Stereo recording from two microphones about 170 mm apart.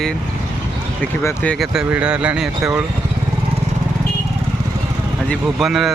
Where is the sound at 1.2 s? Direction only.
15° left (ahead or behind).